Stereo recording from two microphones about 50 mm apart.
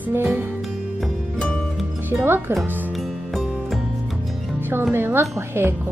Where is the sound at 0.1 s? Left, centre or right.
Right.